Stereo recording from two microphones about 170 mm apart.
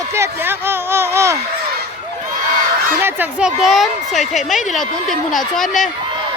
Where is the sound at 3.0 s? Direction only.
10° right (ahead or behind).